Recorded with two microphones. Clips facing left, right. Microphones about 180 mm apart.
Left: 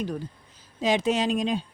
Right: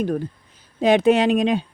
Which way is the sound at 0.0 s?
55° right (ahead or behind).